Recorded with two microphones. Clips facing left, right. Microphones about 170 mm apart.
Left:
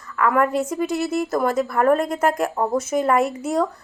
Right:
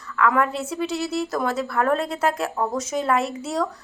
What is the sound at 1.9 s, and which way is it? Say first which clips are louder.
Speech: left 3 dB; 50° left (ahead or behind).